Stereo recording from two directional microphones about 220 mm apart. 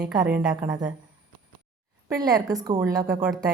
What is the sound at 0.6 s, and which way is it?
Speech, 15° right (ahead or behind).